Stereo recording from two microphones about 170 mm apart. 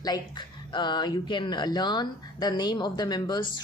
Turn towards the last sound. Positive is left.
turn(degrees=25)  # may be behind; listen again after turning